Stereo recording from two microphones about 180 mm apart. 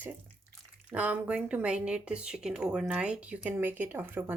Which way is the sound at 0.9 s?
10° right (ahead or behind).